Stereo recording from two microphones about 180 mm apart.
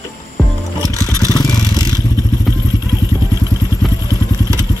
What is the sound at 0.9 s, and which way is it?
Vehicle, 20° left (ahead or behind).